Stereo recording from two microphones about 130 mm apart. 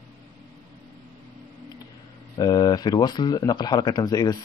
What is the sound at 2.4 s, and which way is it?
A man's voice, 30° left (ahead or behind).